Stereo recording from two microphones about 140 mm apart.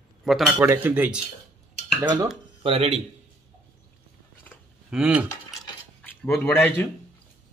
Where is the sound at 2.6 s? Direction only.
45° right (ahead or behind).